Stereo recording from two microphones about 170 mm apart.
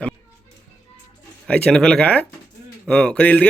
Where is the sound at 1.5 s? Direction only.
5° left (ahead or behind).